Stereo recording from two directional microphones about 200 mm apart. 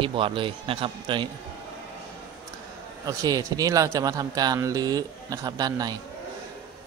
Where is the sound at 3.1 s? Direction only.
20° right (ahead or behind).